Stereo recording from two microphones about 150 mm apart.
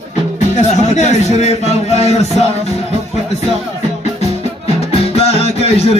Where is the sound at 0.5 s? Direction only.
50° left (ahead or behind).